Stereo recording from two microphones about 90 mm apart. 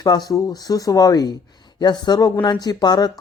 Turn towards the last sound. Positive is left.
turn(degrees=50)  # may be behind; listen again after turning